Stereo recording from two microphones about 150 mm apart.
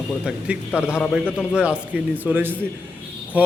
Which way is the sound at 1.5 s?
5° right (ahead or behind).